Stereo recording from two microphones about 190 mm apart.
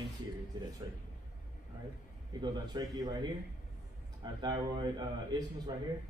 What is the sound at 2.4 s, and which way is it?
A man's voice, 20° right (ahead or behind).